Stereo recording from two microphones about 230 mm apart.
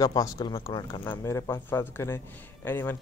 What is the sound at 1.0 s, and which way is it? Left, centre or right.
Speech, centre.